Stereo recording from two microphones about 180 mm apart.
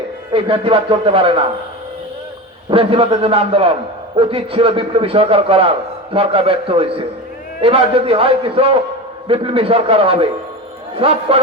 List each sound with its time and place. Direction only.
0.3 s a man's voice: 30° right (ahead or behind)
2.6 s a man's voice: 30° right (ahead or behind)